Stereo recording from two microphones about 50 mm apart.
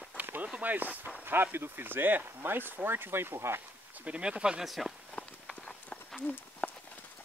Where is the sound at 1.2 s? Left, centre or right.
Right.